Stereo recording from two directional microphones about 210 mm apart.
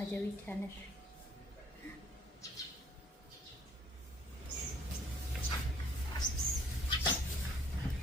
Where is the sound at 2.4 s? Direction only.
15° left (ahead or behind).